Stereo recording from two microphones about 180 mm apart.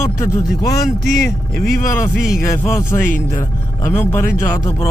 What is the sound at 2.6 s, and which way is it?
Speech, 15° left (ahead or behind).